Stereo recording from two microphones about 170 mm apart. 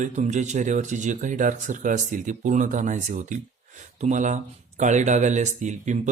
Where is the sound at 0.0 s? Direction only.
45° right (ahead or behind).